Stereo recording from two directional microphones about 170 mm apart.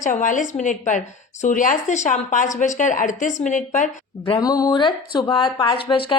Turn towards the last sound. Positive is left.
turn(degrees=30)  # may be behind; listen again after turning